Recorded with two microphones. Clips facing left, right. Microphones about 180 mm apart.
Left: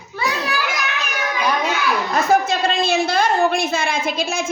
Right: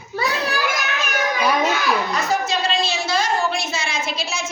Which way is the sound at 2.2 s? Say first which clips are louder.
Left 4 dB; 55° left (ahead or behind).